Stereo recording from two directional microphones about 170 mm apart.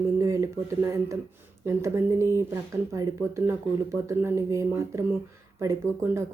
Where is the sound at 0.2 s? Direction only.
15° right (ahead or behind).